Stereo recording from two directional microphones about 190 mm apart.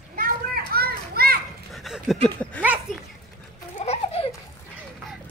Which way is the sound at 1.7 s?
Centre (ahead or behind).